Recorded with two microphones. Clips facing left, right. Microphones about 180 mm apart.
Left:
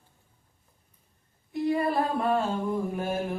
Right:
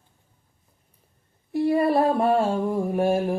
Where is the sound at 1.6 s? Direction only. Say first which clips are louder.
Right 6 dB; 30° right (ahead or behind).